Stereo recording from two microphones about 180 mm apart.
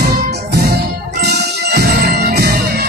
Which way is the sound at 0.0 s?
60° right (ahead or behind).